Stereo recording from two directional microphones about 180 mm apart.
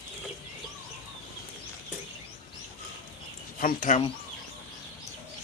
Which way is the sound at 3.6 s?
50° left (ahead or behind).